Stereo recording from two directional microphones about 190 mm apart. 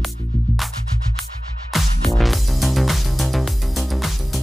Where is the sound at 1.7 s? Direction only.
Centre (ahead or behind).